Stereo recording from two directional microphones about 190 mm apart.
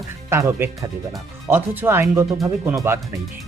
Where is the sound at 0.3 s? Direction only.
15° right (ahead or behind).